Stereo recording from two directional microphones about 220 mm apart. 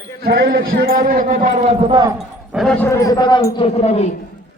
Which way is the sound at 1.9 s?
15° right (ahead or behind).